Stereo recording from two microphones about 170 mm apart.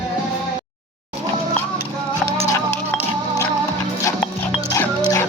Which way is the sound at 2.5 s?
20° left (ahead or behind).